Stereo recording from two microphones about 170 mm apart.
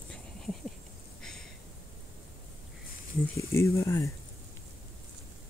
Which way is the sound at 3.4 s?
15° left (ahead or behind).